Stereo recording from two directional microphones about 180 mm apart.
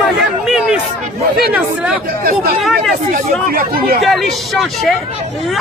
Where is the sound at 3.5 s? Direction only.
55° right (ahead or behind).